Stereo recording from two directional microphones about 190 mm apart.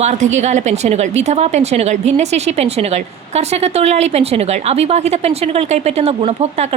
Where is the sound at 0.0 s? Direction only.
40° right (ahead or behind).